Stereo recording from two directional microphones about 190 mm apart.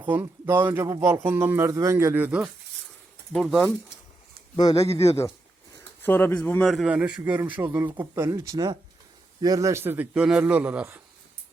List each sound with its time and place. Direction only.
0.1 s a man's voice: 10° right (ahead or behind)
4.5 s a man's voice: 20° left (ahead or behind); by 11.0 s 10° right (ahead or behind)